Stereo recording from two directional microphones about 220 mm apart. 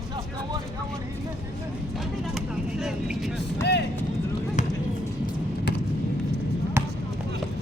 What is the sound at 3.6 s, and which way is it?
Speech, 50° left (ahead or behind).